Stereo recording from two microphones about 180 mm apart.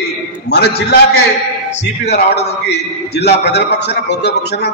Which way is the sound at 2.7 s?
65° left (ahead or behind).